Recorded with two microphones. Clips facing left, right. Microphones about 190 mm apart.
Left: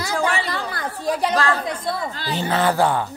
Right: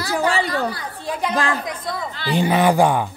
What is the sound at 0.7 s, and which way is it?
Chatter, 50° left (ahead or behind).